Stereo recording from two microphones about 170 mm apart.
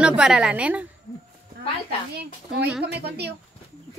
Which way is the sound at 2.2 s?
75° right (ahead or behind).